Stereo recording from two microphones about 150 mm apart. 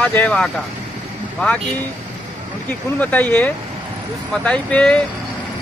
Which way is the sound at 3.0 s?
10° left (ahead or behind).